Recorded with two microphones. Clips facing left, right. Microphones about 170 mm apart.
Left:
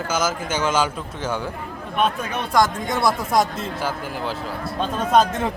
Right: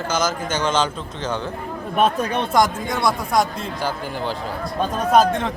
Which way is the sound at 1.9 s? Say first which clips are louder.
Right 3 dB; 40° right (ahead or behind).